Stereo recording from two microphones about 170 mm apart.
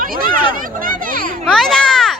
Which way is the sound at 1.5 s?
5° left (ahead or behind).